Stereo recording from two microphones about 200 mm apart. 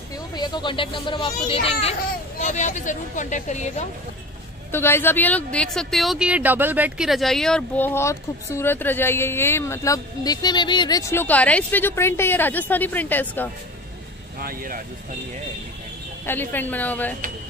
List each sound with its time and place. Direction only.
0.3 s speech: 20° left (ahead or behind); by 3.8 s 35° left (ahead or behind)
4.6 s speech: 10° left (ahead or behind)
14.4 s speech: 45° right (ahead or behind)
16.3 s speech: 10° left (ahead or behind)